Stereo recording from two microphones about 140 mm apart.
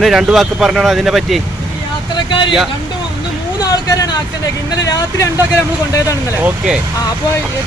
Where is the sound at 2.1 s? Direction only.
35° left (ahead or behind).